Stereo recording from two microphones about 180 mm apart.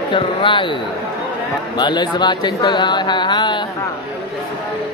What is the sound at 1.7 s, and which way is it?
Speech, 25° left (ahead or behind).